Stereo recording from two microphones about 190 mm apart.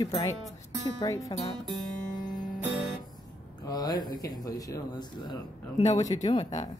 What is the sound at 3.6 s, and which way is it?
Speech, 20° left (ahead or behind).